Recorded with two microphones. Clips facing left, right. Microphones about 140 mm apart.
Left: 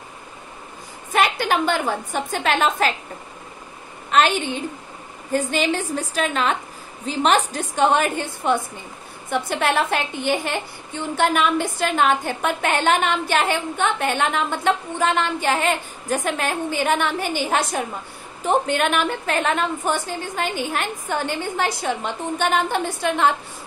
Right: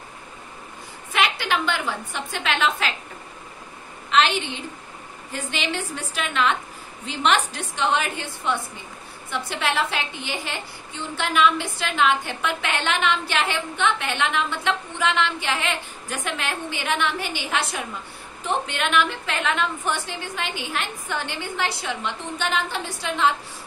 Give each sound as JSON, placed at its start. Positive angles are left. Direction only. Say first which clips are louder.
{"t": 1.1, "sound": "a woman's voice", "louder": "left 4 dB", "side_deg": 45}
{"t": 4.1, "sound": "a woman's voice", "louder": "left 2 dB", "side_deg": 45}